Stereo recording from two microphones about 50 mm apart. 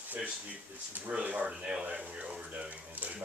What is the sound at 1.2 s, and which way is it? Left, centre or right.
Speech, right.